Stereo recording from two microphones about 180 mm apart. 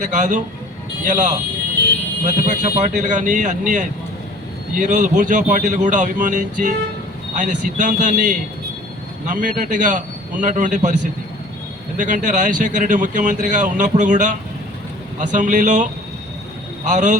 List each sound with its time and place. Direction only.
0.0 s speech: 45° right (ahead or behind)